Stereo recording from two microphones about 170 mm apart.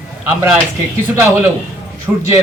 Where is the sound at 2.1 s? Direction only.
5° right (ahead or behind).